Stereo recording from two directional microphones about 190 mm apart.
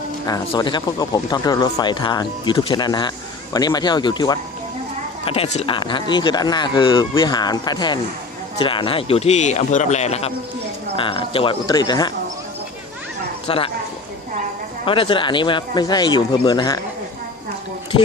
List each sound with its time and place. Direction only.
0.3 s a man's voice: 20° left (ahead or behind)
13.5 s speech: 30° left (ahead or behind)
14.8 s speech: 25° left (ahead or behind)